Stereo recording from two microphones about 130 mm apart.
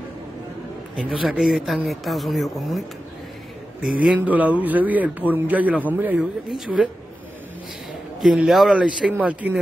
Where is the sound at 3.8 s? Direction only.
10° right (ahead or behind).